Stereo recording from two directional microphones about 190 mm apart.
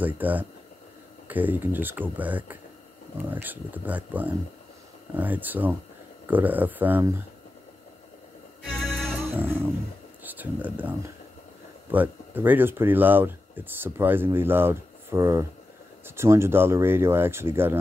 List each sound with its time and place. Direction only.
0.0 s speech: 10° right (ahead or behind)
8.6 s music: 5° left (ahead or behind)
10.2 s speech: 10° right (ahead or behind)